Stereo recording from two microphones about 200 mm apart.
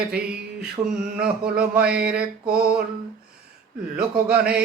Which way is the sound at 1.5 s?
5° right (ahead or behind).